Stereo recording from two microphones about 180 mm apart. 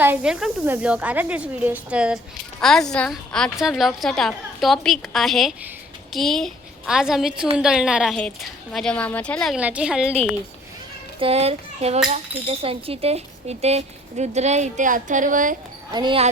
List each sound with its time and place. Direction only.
0.0 s a woman's voice: 10° right (ahead or behind)
11.2 s a sound: 35° right (ahead or behind)
12.5 s speech: 30° right (ahead or behind)
15.9 s speech: 25° right (ahead or behind)